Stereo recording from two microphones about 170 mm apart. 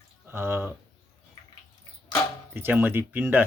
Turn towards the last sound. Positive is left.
turn(degrees=-10)  # may be behind; listen again after turning